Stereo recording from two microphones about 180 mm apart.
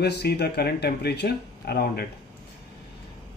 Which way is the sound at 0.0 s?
65° left (ahead or behind).